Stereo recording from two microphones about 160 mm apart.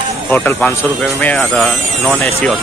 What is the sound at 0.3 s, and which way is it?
Speech, 10° left (ahead or behind).